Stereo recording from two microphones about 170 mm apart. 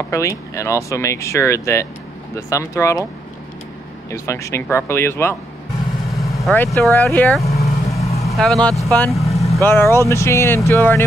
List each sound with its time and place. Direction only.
0.1 s speech: 15° left (ahead or behind)
4.1 s speech: 15° left (ahead or behind)
6.5 s speech: 10° left (ahead or behind)
7.4 s vehicle: 40° left (ahead or behind)
8.4 s speech: 5° left (ahead or behind)
9.2 s vehicle: 40° left (ahead or behind)
9.7 s speech: 15° left (ahead or behind)